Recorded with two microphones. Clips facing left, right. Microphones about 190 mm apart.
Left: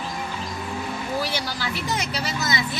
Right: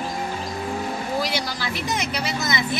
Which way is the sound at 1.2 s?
15° right (ahead or behind).